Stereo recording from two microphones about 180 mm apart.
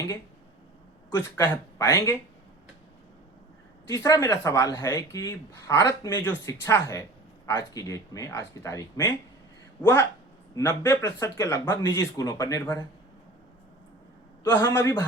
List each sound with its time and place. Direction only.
1.1 s speech: 15° left (ahead or behind)
3.8 s speech: 15° left (ahead or behind)
10.5 s speech: 15° left (ahead or behind)
14.4 s speech: 15° left (ahead or behind)